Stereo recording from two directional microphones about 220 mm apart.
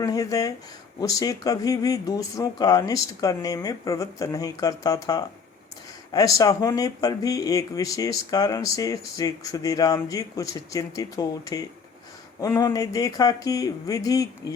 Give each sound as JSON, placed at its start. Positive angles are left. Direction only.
{"t": 0.0, "sound": "speech", "side_deg": 15}